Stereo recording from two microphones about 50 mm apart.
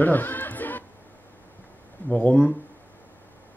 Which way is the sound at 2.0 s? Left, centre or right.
Left.